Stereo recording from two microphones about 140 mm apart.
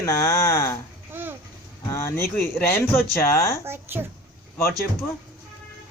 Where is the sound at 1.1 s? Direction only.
15° right (ahead or behind).